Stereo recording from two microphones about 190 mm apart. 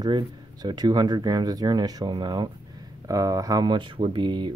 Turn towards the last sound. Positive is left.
turn(degrees=-25)  # may be behind; listen again after turning